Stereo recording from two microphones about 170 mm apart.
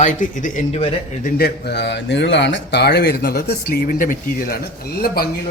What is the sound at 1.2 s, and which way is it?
Speech, 65° left (ahead or behind).